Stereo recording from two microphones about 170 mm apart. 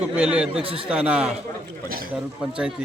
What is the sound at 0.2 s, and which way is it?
Speech, 5° right (ahead or behind).